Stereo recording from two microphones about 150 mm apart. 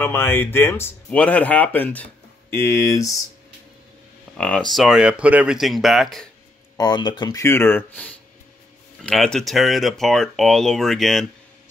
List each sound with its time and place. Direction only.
0.0 s speech: 15° left (ahead or behind)
4.4 s speech: 5° left (ahead or behind)
6.8 s speech: 30° left (ahead or behind); by 11.2 s centre (ahead or behind)